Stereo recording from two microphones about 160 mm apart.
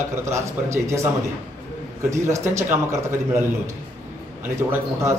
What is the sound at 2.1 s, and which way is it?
A man's voice, 20° right (ahead or behind).